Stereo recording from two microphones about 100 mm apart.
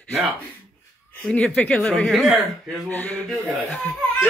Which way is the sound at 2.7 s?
15° left (ahead or behind).